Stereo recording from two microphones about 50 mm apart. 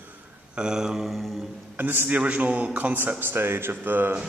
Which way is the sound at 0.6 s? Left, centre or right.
Centre.